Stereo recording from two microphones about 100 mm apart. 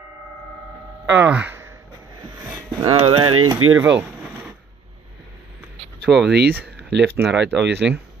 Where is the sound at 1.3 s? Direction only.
15° right (ahead or behind).